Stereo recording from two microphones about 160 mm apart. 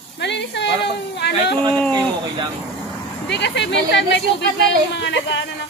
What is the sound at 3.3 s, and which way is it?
Speech, 90° left.